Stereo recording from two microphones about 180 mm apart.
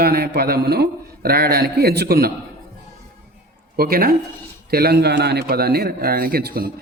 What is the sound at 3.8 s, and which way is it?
A man's voice, 55° right (ahead or behind).